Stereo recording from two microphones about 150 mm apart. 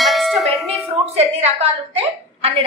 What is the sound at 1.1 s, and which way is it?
A woman's voice, 45° right (ahead or behind).